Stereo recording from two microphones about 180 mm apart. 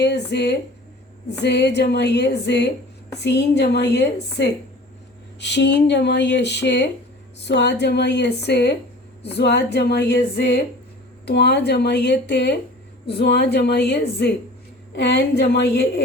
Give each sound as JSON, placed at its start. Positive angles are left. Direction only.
{"t": 0.0, "sound": "a woman's voice", "side_deg": 70}